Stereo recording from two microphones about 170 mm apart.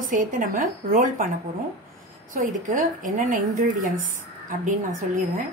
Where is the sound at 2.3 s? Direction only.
50° right (ahead or behind).